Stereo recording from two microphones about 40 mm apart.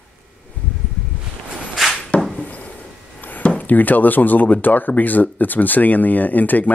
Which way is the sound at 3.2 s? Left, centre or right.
Left.